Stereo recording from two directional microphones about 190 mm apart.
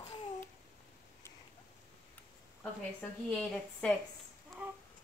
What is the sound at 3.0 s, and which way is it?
Speech, 5° left (ahead or behind).